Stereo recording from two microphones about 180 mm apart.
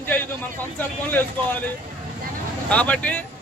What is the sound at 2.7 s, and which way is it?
Speech, 5° left (ahead or behind).